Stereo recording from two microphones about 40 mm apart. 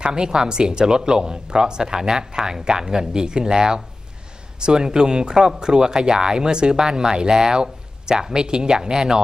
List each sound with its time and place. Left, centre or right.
0.0 s speech: centre